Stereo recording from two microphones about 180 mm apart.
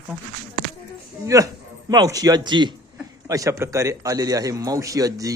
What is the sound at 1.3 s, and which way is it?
A man's voice, 15° right (ahead or behind).